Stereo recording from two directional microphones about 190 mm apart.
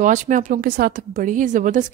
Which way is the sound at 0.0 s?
40° right (ahead or behind).